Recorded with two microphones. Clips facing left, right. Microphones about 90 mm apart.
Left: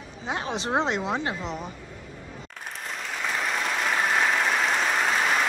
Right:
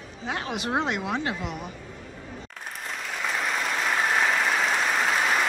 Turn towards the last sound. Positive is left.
turn(degrees=0)  # may be behind; listen again after turning